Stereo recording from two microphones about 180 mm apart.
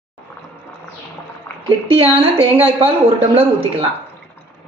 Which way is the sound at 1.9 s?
30° right (ahead or behind).